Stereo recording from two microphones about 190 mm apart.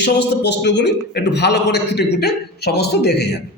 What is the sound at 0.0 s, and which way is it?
A man's voice, 65° left (ahead or behind).